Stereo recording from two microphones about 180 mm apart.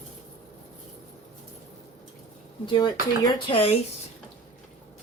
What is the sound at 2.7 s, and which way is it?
Speech, 25° left (ahead or behind).